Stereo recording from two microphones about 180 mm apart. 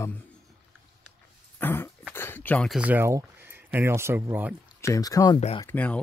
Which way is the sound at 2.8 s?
10° right (ahead or behind).